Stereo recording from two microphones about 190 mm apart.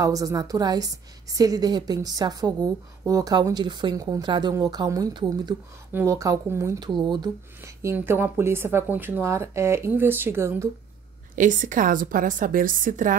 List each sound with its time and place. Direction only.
0.0 s a woman's voice: 20° right (ahead or behind)
11.3 s a woman's voice: 40° right (ahead or behind)